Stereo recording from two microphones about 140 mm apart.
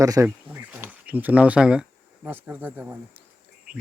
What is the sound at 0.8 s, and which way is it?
Speech, 10° right (ahead or behind).